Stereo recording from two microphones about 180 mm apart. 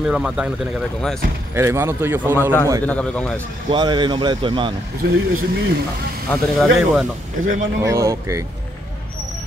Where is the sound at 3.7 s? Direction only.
25° right (ahead or behind).